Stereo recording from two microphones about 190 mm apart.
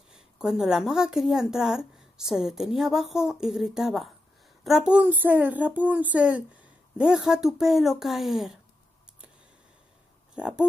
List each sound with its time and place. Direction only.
0.1 s a woman's voice: 5° right (ahead or behind)
10.3 s a woman's voice: 5° right (ahead or behind)